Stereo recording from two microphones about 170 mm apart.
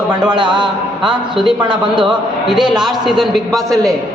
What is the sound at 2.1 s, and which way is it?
A man's voice, 5° right (ahead or behind).